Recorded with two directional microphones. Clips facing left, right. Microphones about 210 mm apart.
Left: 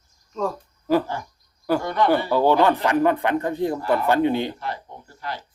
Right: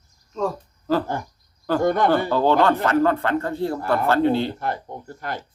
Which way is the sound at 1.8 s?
50° right (ahead or behind).